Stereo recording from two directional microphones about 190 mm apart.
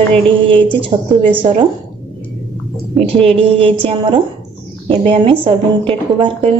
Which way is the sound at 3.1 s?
30° right (ahead or behind).